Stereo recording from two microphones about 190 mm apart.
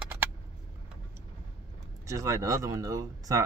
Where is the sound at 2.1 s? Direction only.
15° right (ahead or behind).